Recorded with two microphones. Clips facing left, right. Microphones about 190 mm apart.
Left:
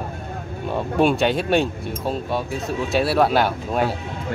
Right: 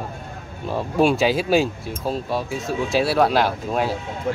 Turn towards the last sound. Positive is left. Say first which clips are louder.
# even
turn(degrees=0)  # may be behind; listen again after turning